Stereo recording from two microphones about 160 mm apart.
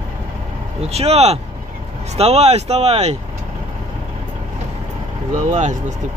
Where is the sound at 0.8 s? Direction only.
40° right (ahead or behind).